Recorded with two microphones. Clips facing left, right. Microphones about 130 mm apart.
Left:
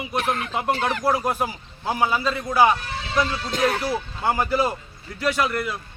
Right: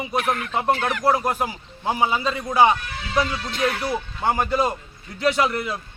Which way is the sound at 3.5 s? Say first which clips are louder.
Left 2 dB; 40° left (ahead or behind).